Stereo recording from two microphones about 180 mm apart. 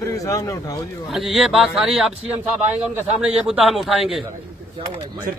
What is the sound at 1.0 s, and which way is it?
A man's voice, centre (ahead or behind).